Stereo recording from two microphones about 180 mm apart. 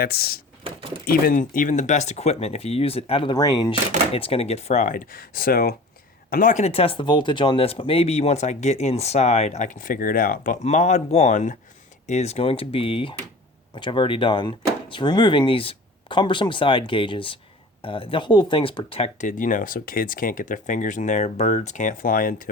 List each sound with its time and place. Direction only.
0.0 s speech: 60° left (ahead or behind)
0.6 s a sound: 30° right (ahead or behind)
1.0 s speech: 50° left (ahead or behind); by 3.8 s 20° left (ahead or behind)
4.1 s speech: 30° left (ahead or behind); by 5.7 s 55° left (ahead or behind)
6.3 s speech: 45° left (ahead or behind)